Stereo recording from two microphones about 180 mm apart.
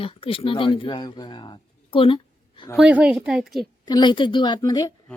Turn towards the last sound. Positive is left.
turn(degrees=20)  # may be behind; listen again after turning